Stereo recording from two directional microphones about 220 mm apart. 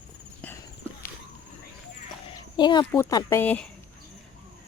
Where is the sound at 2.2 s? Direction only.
20° left (ahead or behind).